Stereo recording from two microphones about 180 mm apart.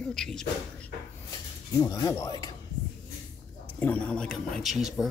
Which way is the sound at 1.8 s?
20° left (ahead or behind).